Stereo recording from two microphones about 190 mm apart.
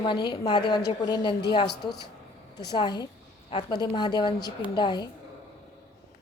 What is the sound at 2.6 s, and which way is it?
A woman's voice, 20° left (ahead or behind).